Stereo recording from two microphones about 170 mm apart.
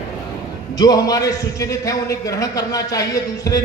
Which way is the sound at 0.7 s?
25° left (ahead or behind).